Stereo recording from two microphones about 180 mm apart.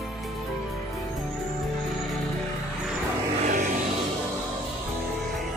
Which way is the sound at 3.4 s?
45° right (ahead or behind).